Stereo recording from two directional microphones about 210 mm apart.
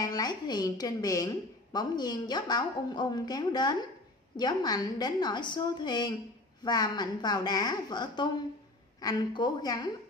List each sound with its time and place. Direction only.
0.0 s a woman's voice: 15° left (ahead or behind)